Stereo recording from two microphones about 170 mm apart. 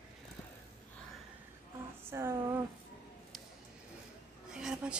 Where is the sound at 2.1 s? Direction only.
15° right (ahead or behind).